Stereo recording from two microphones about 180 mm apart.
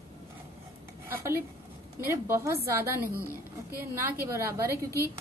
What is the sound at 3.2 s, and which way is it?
Speech, 15° left (ahead or behind).